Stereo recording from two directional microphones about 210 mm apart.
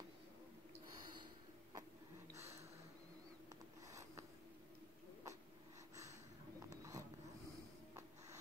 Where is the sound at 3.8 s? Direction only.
15° right (ahead or behind).